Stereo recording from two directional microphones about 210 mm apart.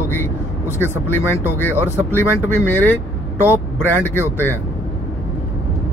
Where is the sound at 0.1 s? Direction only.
10° left (ahead or behind).